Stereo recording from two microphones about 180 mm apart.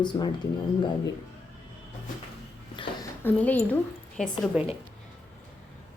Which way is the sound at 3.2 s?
10° left (ahead or behind).